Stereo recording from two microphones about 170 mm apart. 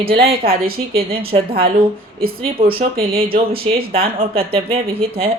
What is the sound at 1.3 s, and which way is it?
Speech, 35° right (ahead or behind).